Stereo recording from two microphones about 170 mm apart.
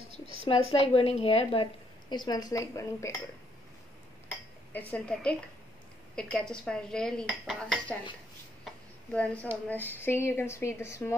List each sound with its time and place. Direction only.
0.5 s a woman's voice: 35° left (ahead or behind); by 3.1 s 20° left (ahead or behind)
4.7 s speech: 10° left (ahead or behind)
6.1 s dishes: 5° left (ahead or behind)
8.6 s a sound: 5° left (ahead or behind)
9.8 s speech: 15° left (ahead or behind)